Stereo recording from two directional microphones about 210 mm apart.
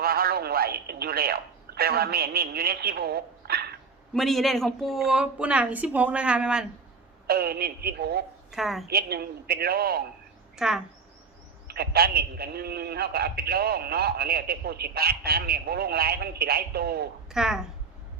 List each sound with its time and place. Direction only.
0.0 s a man's voice: 45° right (ahead or behind)
4.1 s speech: centre (ahead or behind)
7.3 s a man's voice: 45° right (ahead or behind)
8.5 s speech: centre (ahead or behind)
8.9 s a man's voice: 50° right (ahead or behind)
10.6 s speech: centre (ahead or behind)
11.7 s a man's voice: 50° right (ahead or behind)
17.3 s speech: centre (ahead or behind)